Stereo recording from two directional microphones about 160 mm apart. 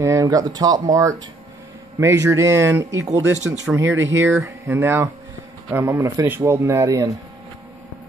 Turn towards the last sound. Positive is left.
turn(degrees=-20)  # may be behind; listen again after turning